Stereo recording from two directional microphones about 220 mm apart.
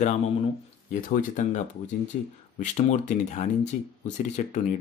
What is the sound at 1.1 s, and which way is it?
Speech, 35° left (ahead or behind).